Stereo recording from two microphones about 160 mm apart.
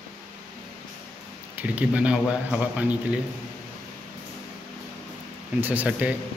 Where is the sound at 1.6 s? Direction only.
10° right (ahead or behind).